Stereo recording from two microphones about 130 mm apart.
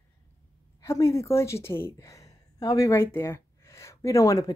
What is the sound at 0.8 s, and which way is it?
A woman's voice, 25° left (ahead or behind).